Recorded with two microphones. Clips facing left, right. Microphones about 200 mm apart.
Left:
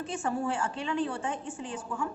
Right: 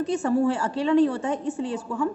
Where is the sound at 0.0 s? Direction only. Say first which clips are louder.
Right 10 dB; 40° right (ahead or behind).